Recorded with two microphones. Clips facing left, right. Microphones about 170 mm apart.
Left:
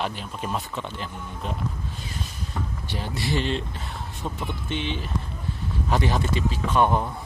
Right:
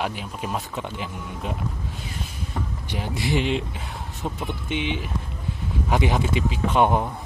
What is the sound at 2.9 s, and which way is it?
Speech, 20° right (ahead or behind).